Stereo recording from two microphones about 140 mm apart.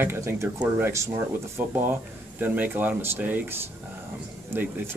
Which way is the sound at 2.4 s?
15° right (ahead or behind).